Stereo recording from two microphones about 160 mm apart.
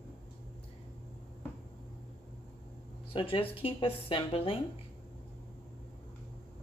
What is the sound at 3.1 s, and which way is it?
Speech, 35° left (ahead or behind).